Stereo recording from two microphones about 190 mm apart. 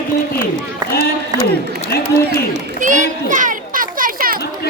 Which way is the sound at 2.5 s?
40° right (ahead or behind).